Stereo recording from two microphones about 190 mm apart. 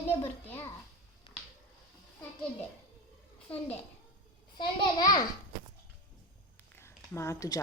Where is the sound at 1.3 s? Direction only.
30° left (ahead or behind).